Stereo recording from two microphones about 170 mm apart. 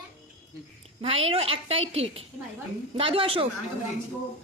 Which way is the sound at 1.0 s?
35° right (ahead or behind).